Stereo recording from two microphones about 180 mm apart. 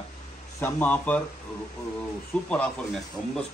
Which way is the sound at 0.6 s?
10° left (ahead or behind).